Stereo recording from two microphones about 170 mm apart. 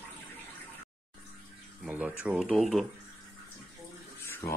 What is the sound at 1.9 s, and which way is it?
Speech, 5° right (ahead or behind).